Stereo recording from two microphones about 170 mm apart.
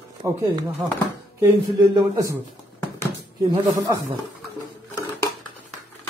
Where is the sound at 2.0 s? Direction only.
20° right (ahead or behind).